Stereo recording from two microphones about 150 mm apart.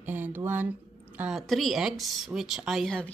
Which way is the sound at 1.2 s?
Centre (ahead or behind).